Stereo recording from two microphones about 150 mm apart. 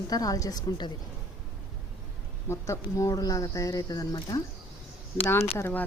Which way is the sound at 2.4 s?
20° left (ahead or behind).